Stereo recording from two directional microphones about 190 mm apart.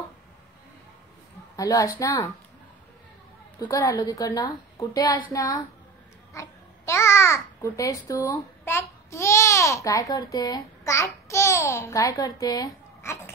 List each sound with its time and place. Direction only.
1.6 s a woman's voice: 20° left (ahead or behind)
3.6 s a woman's voice: 20° left (ahead or behind)
5.3 s child singing: 15° left (ahead or behind)
6.3 s a child's voice: 15° left (ahead or behind)